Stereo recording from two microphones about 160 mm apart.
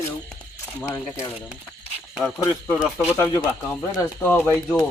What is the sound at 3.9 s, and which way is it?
Speech, 15° left (ahead or behind).